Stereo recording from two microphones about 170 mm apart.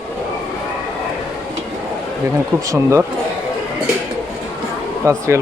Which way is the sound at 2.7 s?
15° right (ahead or behind).